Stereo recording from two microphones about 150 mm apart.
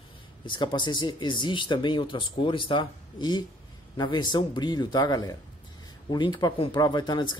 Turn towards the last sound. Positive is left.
turn(degrees=30)  # may be behind; listen again after turning